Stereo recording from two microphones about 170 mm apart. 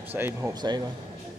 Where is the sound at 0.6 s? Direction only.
25° right (ahead or behind).